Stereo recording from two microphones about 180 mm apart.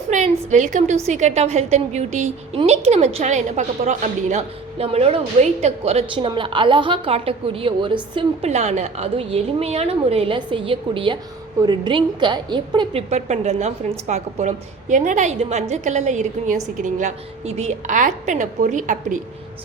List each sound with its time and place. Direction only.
0.1 s a woman's voice: 45° right (ahead or behind)